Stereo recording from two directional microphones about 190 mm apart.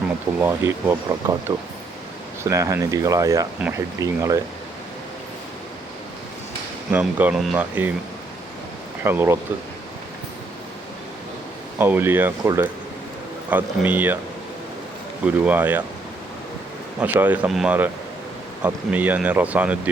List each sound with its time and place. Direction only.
0.3 s speech: 10° right (ahead or behind)
6.9 s speech: 10° right (ahead or behind)
9.0 s speech: 10° right (ahead or behind)
11.8 s speech: 10° right (ahead or behind)
15.2 s speech: 10° right (ahead or behind)
17.0 s speech: 10° right (ahead or behind)